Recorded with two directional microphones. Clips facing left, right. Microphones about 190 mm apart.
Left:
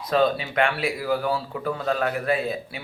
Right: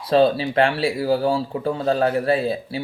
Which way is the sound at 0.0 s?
30° right (ahead or behind).